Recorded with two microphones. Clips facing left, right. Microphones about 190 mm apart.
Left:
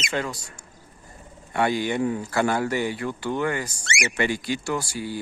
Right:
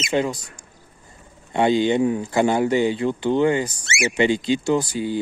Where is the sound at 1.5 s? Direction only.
20° right (ahead or behind).